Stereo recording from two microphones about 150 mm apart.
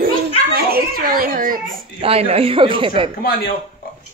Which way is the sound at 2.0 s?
40° right (ahead or behind).